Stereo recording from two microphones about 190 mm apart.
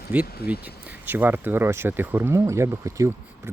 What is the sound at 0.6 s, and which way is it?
Speech, 10° right (ahead or behind).